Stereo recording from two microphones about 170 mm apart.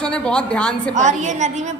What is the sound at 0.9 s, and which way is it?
Speech, 45° right (ahead or behind).